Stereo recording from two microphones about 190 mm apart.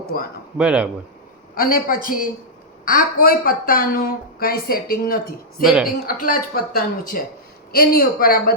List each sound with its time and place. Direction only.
0.5 s speech: 5° right (ahead or behind)
1.5 s a woman's voice: 50° left (ahead or behind)
5.6 s speech: centre (ahead or behind)
6.1 s a woman's voice: 45° left (ahead or behind)